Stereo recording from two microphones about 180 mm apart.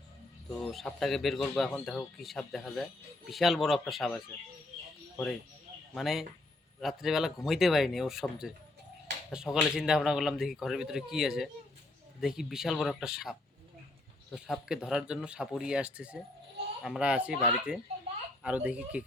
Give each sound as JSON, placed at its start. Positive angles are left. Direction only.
{"t": 0.6, "sound": "speech", "side_deg": 0}
{"t": 5.9, "sound": "speech", "side_deg": 0}
{"t": 14.3, "sound": "speech", "side_deg": 0}